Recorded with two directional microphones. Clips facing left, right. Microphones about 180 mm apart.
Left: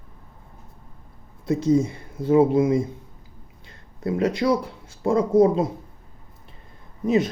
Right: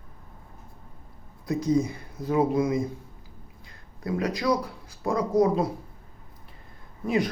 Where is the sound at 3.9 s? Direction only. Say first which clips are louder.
Left 5 dB; 25° left (ahead or behind).